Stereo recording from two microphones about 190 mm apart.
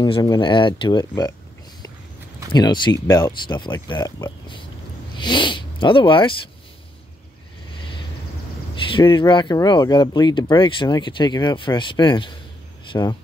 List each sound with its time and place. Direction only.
0.0 s speech: 20° left (ahead or behind)
2.5 s speech: 25° left (ahead or behind)
8.9 s speech: 25° left (ahead or behind)